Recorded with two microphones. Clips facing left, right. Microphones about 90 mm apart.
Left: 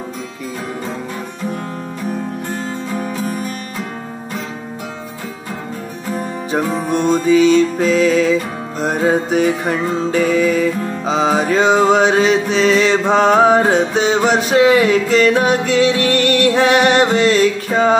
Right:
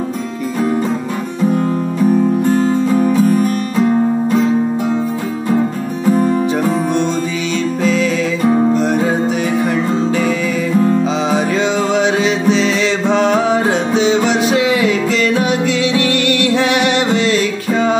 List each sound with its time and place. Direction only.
8.8 s music: 40° left (ahead or behind)
11.1 s music: 35° left (ahead or behind)